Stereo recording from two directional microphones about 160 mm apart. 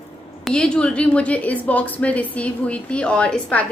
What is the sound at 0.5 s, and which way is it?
A woman's voice, 5° left (ahead or behind).